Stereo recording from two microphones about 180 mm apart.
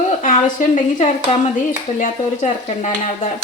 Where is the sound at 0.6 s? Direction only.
45° left (ahead or behind).